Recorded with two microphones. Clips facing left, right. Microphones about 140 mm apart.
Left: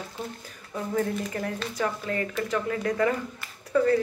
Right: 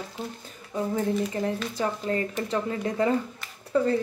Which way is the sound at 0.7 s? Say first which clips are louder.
Right 2 dB; 25° right (ahead or behind).